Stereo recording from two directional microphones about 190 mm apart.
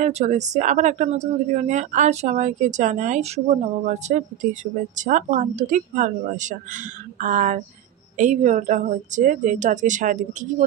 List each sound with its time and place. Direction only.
0.0 s speech: 40° right (ahead or behind)